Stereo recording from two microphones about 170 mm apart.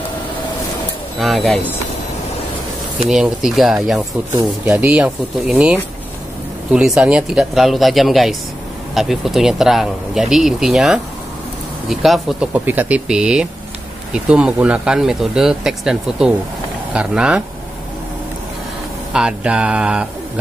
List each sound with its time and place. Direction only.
1.2 s speech: centre (ahead or behind)
3.0 s speech: centre (ahead or behind)
19.1 s speech: 5° right (ahead or behind)